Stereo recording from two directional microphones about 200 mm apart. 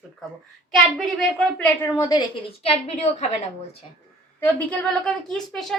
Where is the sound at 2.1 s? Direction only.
25° left (ahead or behind).